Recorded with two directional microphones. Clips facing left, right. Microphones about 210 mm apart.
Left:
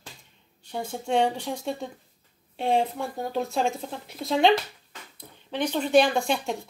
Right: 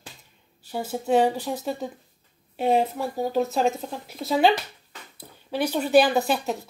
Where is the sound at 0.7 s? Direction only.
5° right (ahead or behind).